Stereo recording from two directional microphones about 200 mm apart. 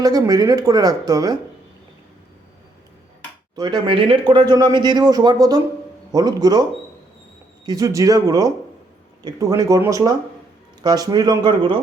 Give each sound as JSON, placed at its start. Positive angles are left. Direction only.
{"t": 0.0, "sound": "speech", "side_deg": -20}
{"t": 3.5, "sound": "speech", "side_deg": -20}